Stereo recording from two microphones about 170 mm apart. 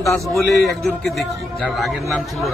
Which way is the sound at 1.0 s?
Centre (ahead or behind).